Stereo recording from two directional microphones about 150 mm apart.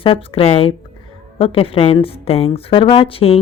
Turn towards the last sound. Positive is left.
turn(degrees=40)  # may be behind; listen again after turning